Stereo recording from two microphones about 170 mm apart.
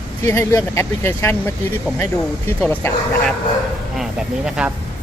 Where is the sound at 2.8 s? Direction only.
15° left (ahead or behind).